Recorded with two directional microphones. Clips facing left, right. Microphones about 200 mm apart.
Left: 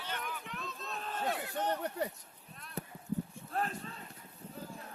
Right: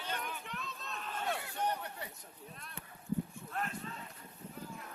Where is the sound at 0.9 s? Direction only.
35° left (ahead or behind).